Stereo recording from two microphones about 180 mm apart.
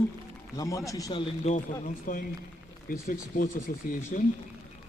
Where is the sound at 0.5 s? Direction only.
20° left (ahead or behind).